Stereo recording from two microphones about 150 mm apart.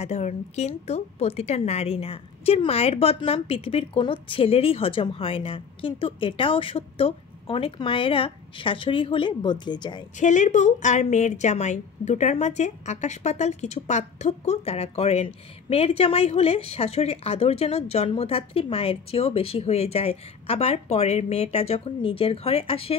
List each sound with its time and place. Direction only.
0.0 s speech: 45° left (ahead or behind); by 10.0 s 30° left (ahead or behind)
10.2 s a woman's voice: 55° left (ahead or behind)